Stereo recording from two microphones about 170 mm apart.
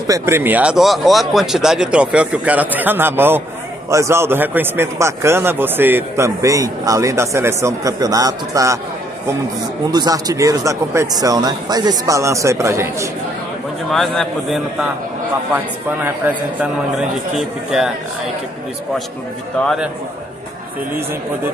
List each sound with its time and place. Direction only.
0.0 s a man's voice: 15° right (ahead or behind)
9.8 s speech: 20° right (ahead or behind)
13.8 s a man's voice: centre (ahead or behind)
15.5 s a man's voice: 10° right (ahead or behind)
19.6 s a man's voice: centre (ahead or behind)